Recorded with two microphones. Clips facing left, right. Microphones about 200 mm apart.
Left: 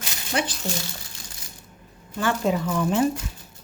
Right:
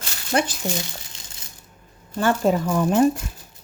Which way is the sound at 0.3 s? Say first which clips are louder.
Right 4 dB; 50° right (ahead or behind).